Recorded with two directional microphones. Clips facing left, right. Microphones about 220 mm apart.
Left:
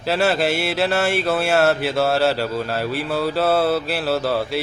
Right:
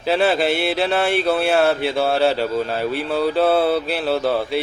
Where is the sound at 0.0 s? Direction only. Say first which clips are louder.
Right 1 dB; centre (ahead or behind).